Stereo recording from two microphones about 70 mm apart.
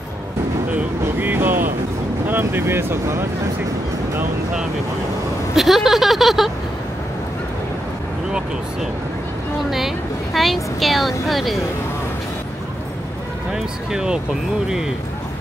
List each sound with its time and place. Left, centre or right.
1.0 s vehicle: right
2.2 s speech: right
5.6 s a woman's voice: centre
9.7 s a woman's voice: centre
13.5 s speech: centre